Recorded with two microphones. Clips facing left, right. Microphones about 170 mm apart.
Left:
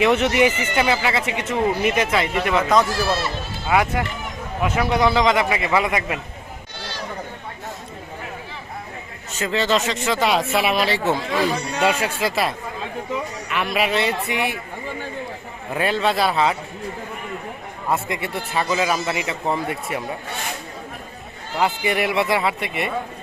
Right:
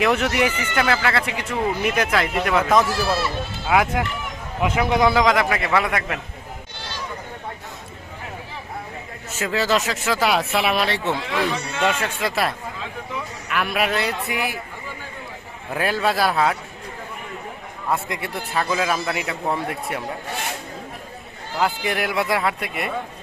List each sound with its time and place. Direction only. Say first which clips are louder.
0.0 s a man's voice: left 3 dB; centre (ahead or behind)
9.4 s a man's voice: left 1 dB; 5° right (ahead or behind)
11.5 s speech: left 2 dB; 40° left (ahead or behind)
12.0 s a man's voice: left 1 dB; centre (ahead or behind)
15.7 s a man's voice: left 1 dB; centre (ahead or behind)
17.9 s a man's voice: left 2 dB; centre (ahead or behind)
21.6 s a man's voice: left 2 dB; centre (ahead or behind)